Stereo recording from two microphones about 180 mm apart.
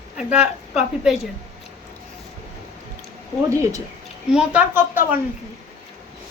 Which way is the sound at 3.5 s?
15° right (ahead or behind).